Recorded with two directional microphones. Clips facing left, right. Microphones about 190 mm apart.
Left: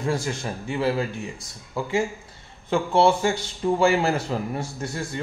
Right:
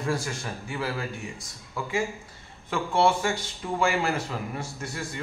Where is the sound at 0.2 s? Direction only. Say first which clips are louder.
Left 5 dB; 25° left (ahead or behind).